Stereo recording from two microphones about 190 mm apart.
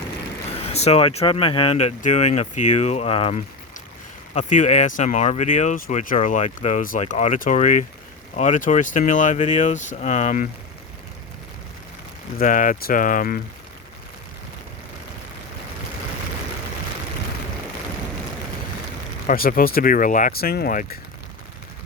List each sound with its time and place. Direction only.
0.7 s speech: 35° left (ahead or behind)
12.4 s speech: 45° left (ahead or behind)
19.3 s speech: 45° left (ahead or behind)